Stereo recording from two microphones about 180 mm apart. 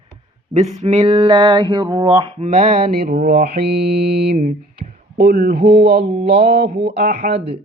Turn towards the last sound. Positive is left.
turn(degrees=-50)  # may be behind; listen again after turning